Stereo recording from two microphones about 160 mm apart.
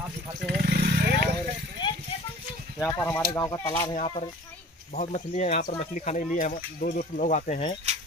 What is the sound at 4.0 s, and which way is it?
Speech, 40° left (ahead or behind).